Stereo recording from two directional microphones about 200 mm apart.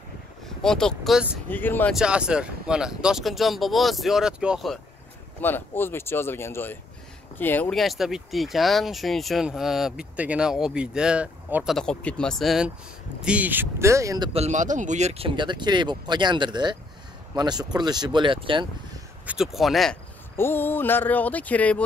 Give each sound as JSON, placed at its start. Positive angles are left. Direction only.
{"t": 0.6, "sound": "speech", "side_deg": 5}
{"t": 1.5, "sound": "speech", "side_deg": 10}
{"t": 2.0, "sound": "speech", "side_deg": -5}
{"t": 5.4, "sound": "speech", "side_deg": 10}
{"t": 14.3, "sound": "speech", "side_deg": -35}
{"t": 19.2, "sound": "speech", "side_deg": 0}
{"t": 20.3, "sound": "speech", "side_deg": 10}